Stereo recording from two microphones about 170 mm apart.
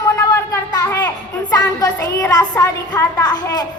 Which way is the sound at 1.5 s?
20° left (ahead or behind).